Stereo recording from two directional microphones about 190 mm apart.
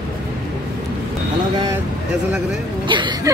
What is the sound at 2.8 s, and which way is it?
Speech, 25° right (ahead or behind).